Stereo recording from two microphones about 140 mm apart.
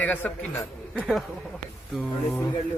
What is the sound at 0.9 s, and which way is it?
Speech, centre (ahead or behind).